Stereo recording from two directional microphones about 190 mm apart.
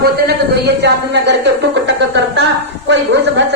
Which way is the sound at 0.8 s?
65° right (ahead or behind).